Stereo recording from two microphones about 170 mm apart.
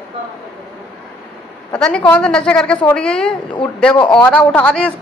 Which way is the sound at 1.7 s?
5° left (ahead or behind).